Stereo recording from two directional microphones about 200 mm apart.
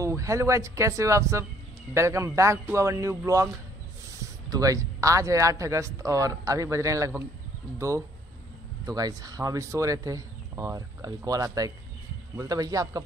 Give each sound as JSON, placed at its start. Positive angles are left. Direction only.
{"t": 0.0, "sound": "speech", "side_deg": -15}
{"t": 4.5, "sound": "speech", "side_deg": -15}
{"t": 8.8, "sound": "speech", "side_deg": -20}